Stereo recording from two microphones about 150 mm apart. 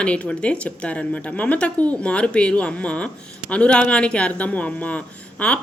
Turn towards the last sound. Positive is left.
turn(degrees=10)  # may be behind; listen again after turning